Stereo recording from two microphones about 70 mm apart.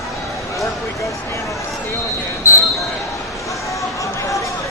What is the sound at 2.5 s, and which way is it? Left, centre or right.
Basketball bounce, left.